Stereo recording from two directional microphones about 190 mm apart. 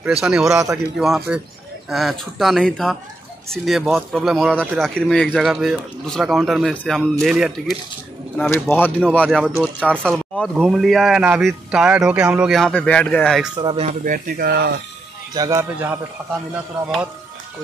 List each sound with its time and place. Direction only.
0.2 s speech: 5° right (ahead or behind)
0.5 s speech: 15° right (ahead or behind)
0.9 s speech: centre (ahead or behind)
8.4 s a man's voice: 10° left (ahead or behind)
13.6 s speech: 25° right (ahead or behind)
13.8 s speech: 45° right (ahead or behind)
15.3 s speech: 20° right (ahead or behind)